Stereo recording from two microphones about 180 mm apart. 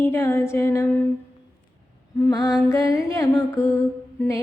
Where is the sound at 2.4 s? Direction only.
5° right (ahead or behind).